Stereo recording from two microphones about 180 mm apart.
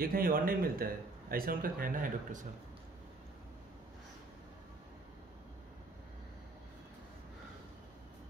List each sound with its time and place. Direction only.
0.0 s speech: 55° right (ahead or behind)